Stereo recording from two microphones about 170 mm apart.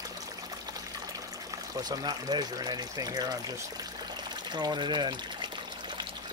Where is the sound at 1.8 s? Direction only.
25° right (ahead or behind).